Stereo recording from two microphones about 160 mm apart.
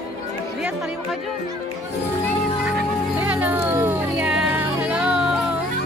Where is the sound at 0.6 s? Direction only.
Centre (ahead or behind).